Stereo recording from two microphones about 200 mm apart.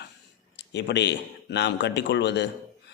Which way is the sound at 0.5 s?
60° left (ahead or behind).